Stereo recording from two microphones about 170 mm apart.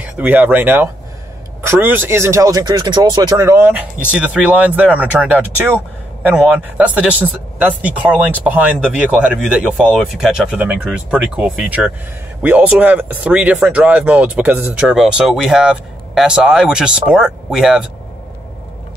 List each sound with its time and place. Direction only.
0.0 s speech: 10° right (ahead or behind)